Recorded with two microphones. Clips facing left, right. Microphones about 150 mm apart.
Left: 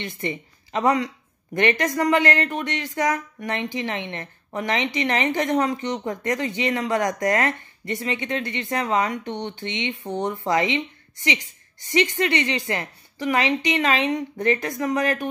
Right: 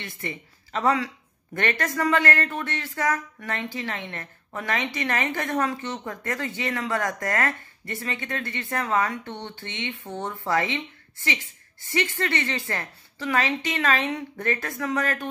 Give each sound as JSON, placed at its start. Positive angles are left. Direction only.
{"t": 0.0, "sound": "a woman's voice", "side_deg": 20}